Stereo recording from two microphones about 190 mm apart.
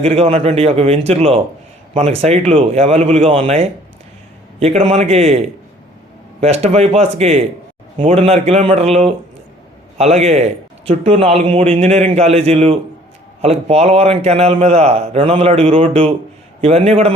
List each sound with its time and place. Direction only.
0.0 s a man's voice: 35° right (ahead or behind)
6.4 s a man's voice: 35° right (ahead or behind)